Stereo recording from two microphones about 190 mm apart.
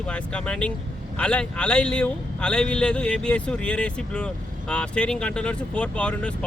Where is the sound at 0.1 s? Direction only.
5° left (ahead or behind).